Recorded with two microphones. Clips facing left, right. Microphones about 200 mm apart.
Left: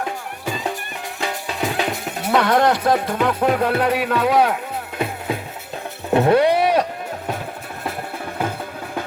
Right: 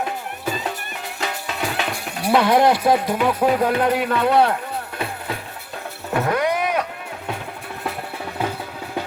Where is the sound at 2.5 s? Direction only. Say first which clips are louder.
Right 1 dB; 10° right (ahead or behind).